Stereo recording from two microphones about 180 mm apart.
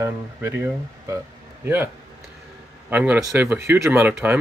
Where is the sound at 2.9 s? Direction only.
10° right (ahead or behind).